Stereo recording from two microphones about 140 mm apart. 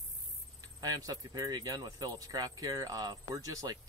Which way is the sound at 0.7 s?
25° right (ahead or behind).